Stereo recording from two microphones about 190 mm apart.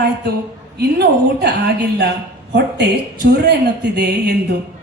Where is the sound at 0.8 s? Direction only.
60° right (ahead or behind).